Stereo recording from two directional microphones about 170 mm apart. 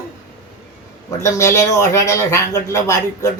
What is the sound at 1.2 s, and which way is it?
Speech, 20° left (ahead or behind).